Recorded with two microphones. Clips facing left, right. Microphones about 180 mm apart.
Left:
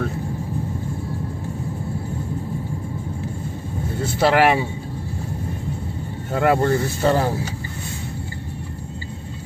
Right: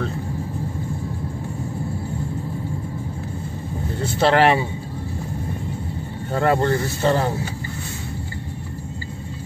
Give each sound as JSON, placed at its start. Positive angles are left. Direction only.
{"t": 4.2, "sound": "a man's voice", "side_deg": 5}
{"t": 6.3, "sound": "speech", "side_deg": 5}